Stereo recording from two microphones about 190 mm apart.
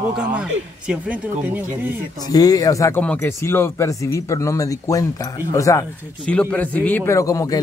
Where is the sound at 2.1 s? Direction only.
20° left (ahead or behind).